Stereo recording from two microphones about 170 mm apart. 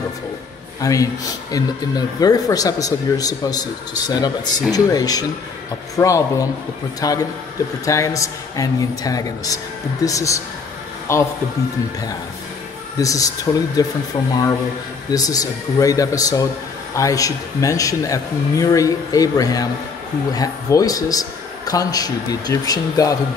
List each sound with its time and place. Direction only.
0.7 s a man's voice: 20° left (ahead or behind)
13.0 s speech: 20° left (ahead or behind)
15.0 s speech: 20° left (ahead or behind)